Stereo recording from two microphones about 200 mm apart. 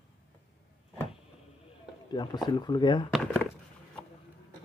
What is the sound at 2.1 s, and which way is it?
Speech, 20° left (ahead or behind).